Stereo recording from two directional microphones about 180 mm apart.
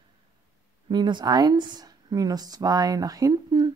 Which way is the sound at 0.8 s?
25° right (ahead or behind).